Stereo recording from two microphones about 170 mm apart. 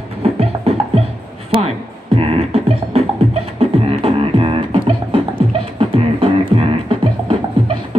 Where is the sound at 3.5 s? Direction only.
35° right (ahead or behind).